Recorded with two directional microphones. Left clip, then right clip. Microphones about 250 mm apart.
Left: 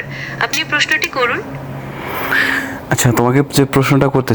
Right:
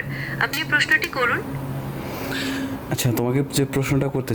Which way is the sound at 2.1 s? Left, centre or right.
Centre.